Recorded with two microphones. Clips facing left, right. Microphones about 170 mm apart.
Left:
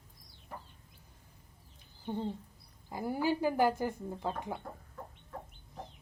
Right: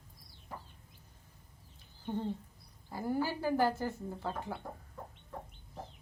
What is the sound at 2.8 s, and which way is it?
Speech, 15° left (ahead or behind).